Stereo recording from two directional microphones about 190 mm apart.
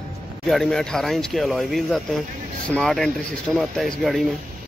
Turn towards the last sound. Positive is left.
turn(degrees=0)  # may be behind; listen again after turning